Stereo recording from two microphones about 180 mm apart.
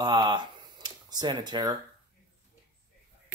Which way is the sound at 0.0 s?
25° right (ahead or behind).